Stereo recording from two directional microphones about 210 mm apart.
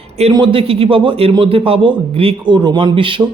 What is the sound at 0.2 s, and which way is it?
A man's voice, 25° right (ahead or behind).